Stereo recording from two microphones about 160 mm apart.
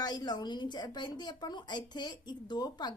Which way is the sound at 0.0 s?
25° left (ahead or behind).